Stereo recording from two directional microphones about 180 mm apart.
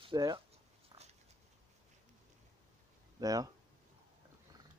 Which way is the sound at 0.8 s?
35° right (ahead or behind).